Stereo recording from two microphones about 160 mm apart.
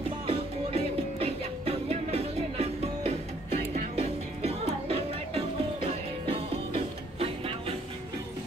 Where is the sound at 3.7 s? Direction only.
40° right (ahead or behind).